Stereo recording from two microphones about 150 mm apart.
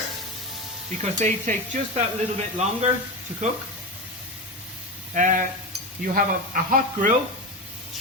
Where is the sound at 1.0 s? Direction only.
50° right (ahead or behind).